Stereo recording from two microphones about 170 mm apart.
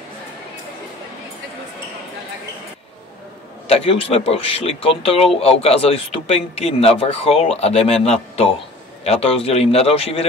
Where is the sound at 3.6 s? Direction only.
35° left (ahead or behind).